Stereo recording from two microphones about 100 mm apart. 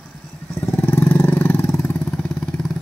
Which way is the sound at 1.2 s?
15° left (ahead or behind).